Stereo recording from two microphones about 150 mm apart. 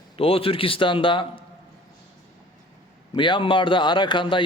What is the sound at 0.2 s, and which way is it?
A man's voice, 40° left (ahead or behind).